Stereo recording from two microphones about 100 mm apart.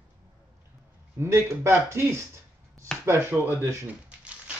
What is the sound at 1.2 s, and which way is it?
Speech, 25° right (ahead or behind).